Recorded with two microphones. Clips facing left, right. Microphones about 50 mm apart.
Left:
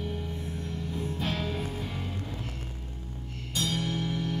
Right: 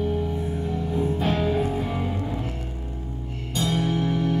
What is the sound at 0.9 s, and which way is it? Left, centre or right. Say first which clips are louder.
Music: right 9 dB; centre.